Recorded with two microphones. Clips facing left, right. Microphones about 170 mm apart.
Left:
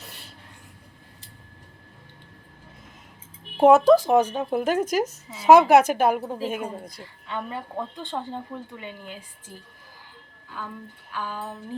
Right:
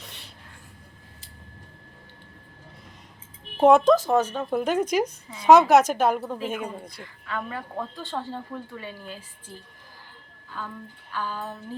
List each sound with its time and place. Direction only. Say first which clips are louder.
0.0 s a sound: left 1 dB; 5° left (ahead or behind)
3.6 s speech: left 2 dB; 5° left (ahead or behind)
7.0 s speech: right 1 dB; 25° left (ahead or behind)
10.6 s speech: even; 10° left (ahead or behind)